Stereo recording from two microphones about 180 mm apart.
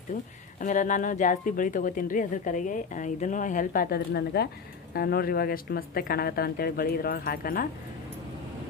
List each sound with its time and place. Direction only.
0.1 s speech: 45° left (ahead or behind)